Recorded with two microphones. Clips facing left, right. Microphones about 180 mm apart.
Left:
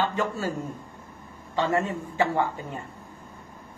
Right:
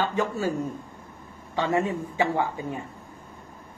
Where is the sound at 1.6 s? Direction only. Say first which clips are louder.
Right 1 dB; 15° right (ahead or behind).